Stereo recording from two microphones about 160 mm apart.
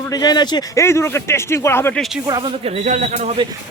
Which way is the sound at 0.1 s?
25° left (ahead or behind).